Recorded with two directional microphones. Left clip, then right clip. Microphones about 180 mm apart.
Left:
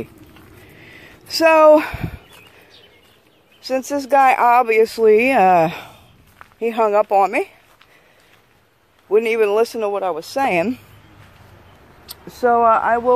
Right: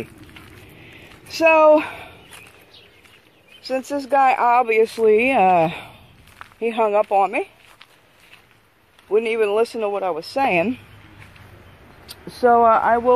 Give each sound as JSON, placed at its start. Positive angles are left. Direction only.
{"t": 0.7, "sound": "a sound", "side_deg": 15}
{"t": 3.6, "sound": "speech", "side_deg": 25}
{"t": 9.1, "sound": "speech", "side_deg": 25}
{"t": 12.1, "sound": "speech", "side_deg": 0}